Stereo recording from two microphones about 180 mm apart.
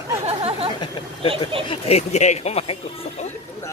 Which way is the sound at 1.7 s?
35° left (ahead or behind).